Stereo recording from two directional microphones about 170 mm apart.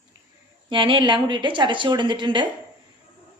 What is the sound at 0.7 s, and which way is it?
A woman's voice, 30° right (ahead or behind).